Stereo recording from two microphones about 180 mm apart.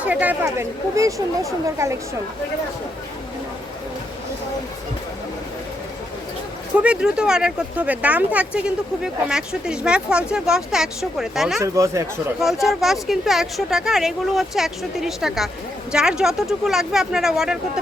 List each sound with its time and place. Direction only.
0.0 s speech: 10° right (ahead or behind)
6.7 s speech: 5° right (ahead or behind)
11.6 s speech: 15° right (ahead or behind)
12.4 s speech: centre (ahead or behind)